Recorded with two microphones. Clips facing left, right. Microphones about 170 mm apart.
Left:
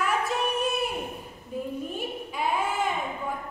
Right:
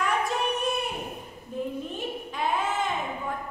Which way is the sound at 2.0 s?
10° left (ahead or behind).